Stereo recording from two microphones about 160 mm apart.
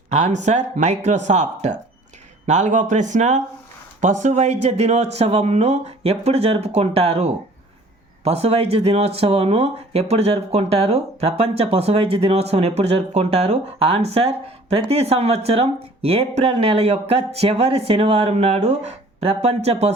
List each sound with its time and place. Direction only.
0.1 s speech: 45° right (ahead or behind)